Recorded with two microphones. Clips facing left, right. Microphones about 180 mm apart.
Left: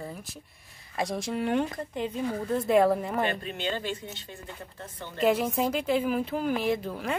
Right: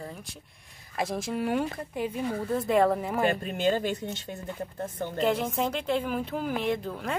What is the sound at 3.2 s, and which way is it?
Speech, 45° right (ahead or behind).